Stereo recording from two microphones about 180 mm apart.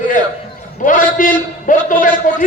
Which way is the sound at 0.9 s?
50° left (ahead or behind).